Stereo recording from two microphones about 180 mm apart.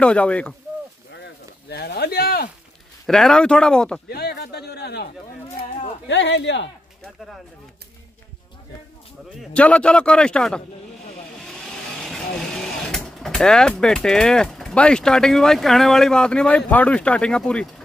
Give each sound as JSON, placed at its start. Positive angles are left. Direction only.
{"t": 0.0, "sound": "speech", "side_deg": 5}
{"t": 1.1, "sound": "a sound", "side_deg": 70}
{"t": 3.1, "sound": "a man's voice", "side_deg": 5}
{"t": 4.1, "sound": "speech", "side_deg": 60}
{"t": 6.0, "sound": "speech", "side_deg": 80}
{"t": 9.3, "sound": "a man's voice", "side_deg": 5}